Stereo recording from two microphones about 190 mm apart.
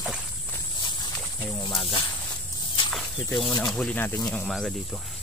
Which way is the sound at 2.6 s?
25° left (ahead or behind).